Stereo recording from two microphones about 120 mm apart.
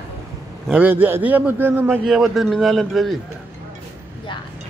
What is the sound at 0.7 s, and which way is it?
A man's voice, 15° right (ahead or behind).